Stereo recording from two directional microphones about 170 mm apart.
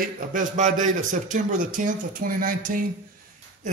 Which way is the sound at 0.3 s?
50° right (ahead or behind).